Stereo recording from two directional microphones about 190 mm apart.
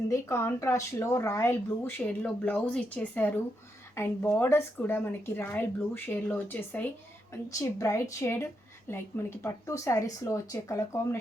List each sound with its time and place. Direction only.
0.1 s speech: 15° left (ahead or behind)